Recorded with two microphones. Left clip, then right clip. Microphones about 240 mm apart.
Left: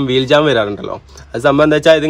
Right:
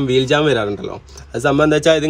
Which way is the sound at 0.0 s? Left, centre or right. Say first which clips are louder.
Left 3 dB; centre.